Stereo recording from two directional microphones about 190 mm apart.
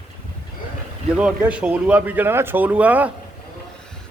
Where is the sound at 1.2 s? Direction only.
5° right (ahead or behind).